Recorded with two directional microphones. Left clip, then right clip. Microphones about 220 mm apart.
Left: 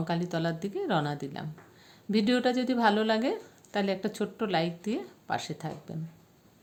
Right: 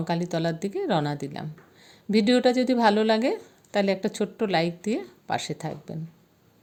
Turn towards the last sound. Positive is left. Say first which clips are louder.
# right 5 dB
turn(degrees=-25)  # may be behind; listen again after turning